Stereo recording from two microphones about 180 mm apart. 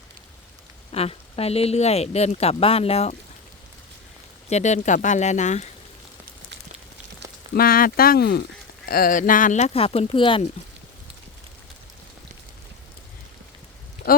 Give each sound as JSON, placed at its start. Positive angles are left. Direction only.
{"t": 0.9, "sound": "speech", "side_deg": 35}
{"t": 4.4, "sound": "speech", "side_deg": 40}
{"t": 7.5, "sound": "speech", "side_deg": 55}
{"t": 8.9, "sound": "speech", "side_deg": 50}
{"t": 14.0, "sound": "a sound", "side_deg": 55}